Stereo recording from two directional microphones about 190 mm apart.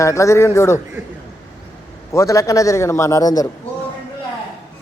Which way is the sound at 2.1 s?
15° left (ahead or behind).